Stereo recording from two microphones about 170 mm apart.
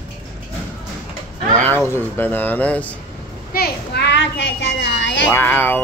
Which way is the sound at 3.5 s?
70° left (ahead or behind).